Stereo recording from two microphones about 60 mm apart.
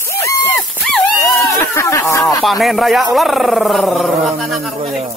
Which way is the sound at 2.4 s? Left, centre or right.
Centre.